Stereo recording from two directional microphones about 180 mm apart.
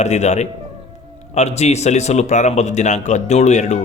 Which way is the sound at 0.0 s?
40° left (ahead or behind).